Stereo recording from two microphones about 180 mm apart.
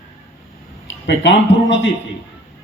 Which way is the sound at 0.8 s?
85° left.